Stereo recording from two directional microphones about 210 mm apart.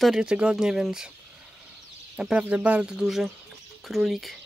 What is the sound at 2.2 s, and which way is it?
Speech, 5° right (ahead or behind).